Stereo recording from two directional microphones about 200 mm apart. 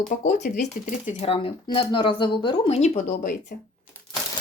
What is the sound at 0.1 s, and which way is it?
Speech, 35° left (ahead or behind).